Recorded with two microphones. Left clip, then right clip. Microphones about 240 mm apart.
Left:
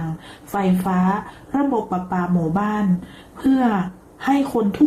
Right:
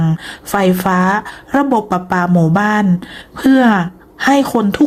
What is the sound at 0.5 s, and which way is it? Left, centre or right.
Speech, right.